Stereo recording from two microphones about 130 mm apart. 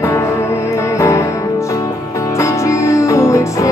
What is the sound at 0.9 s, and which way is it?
Music, 25° left (ahead or behind).